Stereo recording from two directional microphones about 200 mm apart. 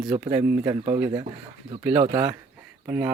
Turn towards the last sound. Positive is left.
turn(degrees=-10)  # may be behind; listen again after turning